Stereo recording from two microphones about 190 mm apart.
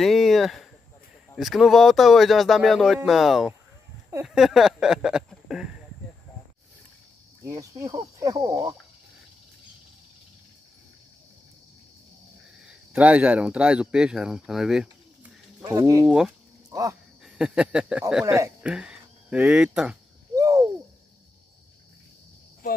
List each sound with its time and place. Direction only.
0.0 s speech: centre (ahead or behind)
7.4 s speech: 20° right (ahead or behind)
12.6 s speech: 5° right (ahead or behind)
15.6 s speech: 15° right (ahead or behind)
17.2 s speech: 5° right (ahead or behind)
18.2 s speech: 15° right (ahead or behind)
20.3 s a sound: 15° right (ahead or behind)